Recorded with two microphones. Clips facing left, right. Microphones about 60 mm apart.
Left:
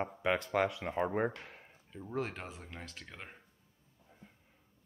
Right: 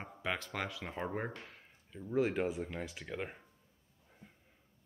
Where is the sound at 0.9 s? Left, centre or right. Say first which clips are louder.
Left 6 dB; centre.